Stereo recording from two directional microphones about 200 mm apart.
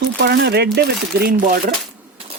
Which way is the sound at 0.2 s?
55° right (ahead or behind).